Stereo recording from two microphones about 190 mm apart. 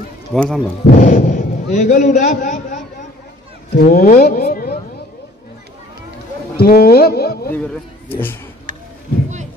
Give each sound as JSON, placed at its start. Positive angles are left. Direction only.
{"t": 0.3, "sound": "speech", "side_deg": 5}
{"t": 0.8, "sound": "a man's voice", "side_deg": 45}
{"t": 3.7, "sound": "speech", "side_deg": 50}
{"t": 6.5, "sound": "speech", "side_deg": 55}
{"t": 7.5, "sound": "a man's voice", "side_deg": 10}